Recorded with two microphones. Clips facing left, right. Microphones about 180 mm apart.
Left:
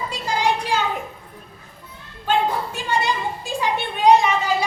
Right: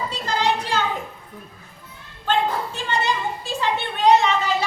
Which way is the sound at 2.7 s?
10° left (ahead or behind).